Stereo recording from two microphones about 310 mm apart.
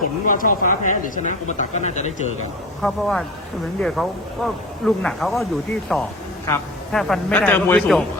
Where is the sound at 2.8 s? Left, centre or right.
Centre.